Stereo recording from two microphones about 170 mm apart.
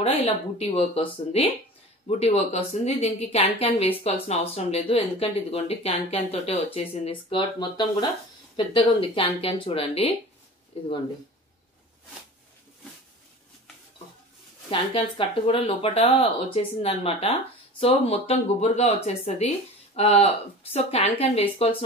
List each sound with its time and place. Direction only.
0.0 s a woman's voice: 35° left (ahead or behind)
14.7 s a woman's voice: 30° left (ahead or behind)